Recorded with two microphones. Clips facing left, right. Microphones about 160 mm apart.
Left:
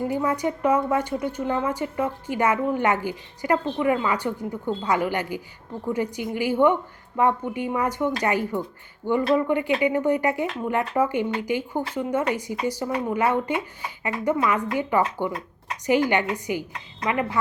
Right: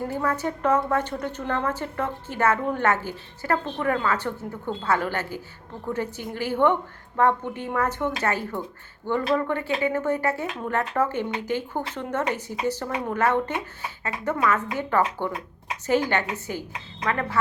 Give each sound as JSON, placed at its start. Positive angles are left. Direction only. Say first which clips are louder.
{"t": 0.1, "sound": "a woman's voice", "louder": "left 2 dB", "side_deg": 15}